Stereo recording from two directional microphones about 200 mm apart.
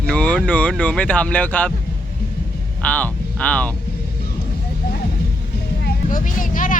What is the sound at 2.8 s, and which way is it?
Speech, 5° left (ahead or behind).